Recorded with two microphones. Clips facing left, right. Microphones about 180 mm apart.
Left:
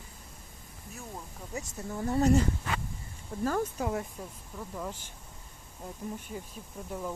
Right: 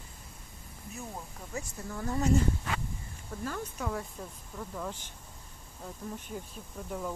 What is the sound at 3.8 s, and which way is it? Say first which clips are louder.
Speech: left 3 dB; 25° left (ahead or behind).